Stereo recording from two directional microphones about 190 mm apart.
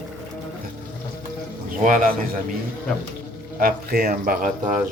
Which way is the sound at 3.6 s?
50° right (ahead or behind).